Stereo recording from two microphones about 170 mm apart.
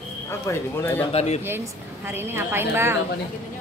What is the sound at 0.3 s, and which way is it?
Speech, 15° left (ahead or behind).